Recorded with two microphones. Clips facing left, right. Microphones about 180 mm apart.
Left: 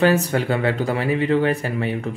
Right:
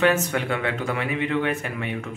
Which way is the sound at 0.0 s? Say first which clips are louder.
Left 3 dB; 35° left (ahead or behind).